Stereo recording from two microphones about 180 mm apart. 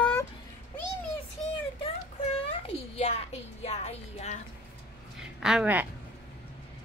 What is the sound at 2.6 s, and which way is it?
Music, 35° left (ahead or behind).